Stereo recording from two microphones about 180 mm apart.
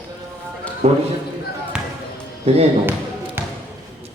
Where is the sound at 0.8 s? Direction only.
35° right (ahead or behind).